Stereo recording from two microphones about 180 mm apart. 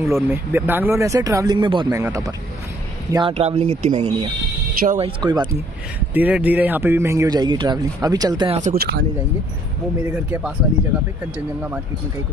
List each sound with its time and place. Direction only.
0.0 s speech: 15° right (ahead or behind)
1.9 s speech: 15° right (ahead or behind)
3.1 s speech: 25° right (ahead or behind)
5.5 s speech: 10° right (ahead or behind)
8.7 s speech: 65° right (ahead or behind)
10.0 s speech: 10° right (ahead or behind)